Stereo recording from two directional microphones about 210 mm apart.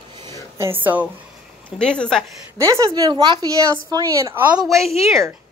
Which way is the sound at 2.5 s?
15° right (ahead or behind).